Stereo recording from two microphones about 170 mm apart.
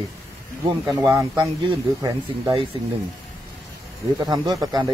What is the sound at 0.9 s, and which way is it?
Speech, 15° right (ahead or behind).